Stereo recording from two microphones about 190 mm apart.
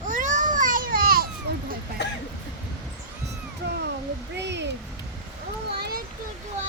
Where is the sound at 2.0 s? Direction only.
65° left (ahead or behind).